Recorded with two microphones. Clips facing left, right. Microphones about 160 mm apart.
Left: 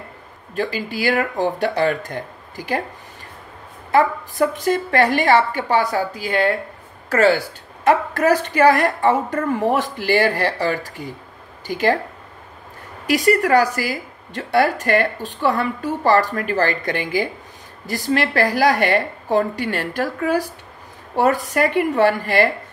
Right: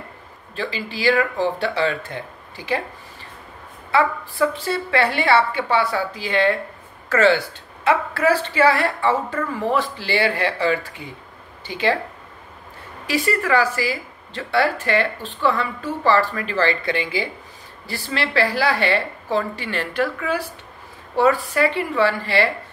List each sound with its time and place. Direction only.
0.6 s a woman's voice: 45° left (ahead or behind)
3.9 s a woman's voice: 40° left (ahead or behind)
13.1 s a woman's voice: 40° left (ahead or behind)